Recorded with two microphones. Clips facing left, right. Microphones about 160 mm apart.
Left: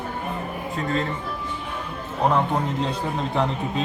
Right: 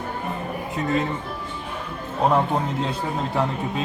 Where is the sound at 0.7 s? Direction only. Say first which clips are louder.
Right 2 dB; 15° right (ahead or behind).